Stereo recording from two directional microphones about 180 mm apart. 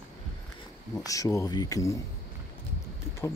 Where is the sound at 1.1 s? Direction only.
20° left (ahead or behind).